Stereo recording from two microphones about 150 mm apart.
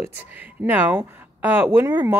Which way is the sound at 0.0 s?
10° right (ahead or behind).